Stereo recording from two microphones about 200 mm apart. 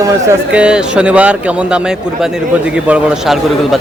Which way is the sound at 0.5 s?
5° right (ahead or behind).